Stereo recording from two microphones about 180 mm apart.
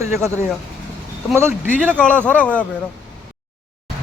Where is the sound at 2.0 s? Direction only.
5° left (ahead or behind).